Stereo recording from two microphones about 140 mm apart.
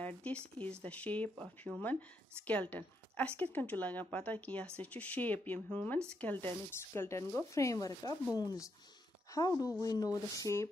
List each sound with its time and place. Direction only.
0.0 s speech: 10° left (ahead or behind)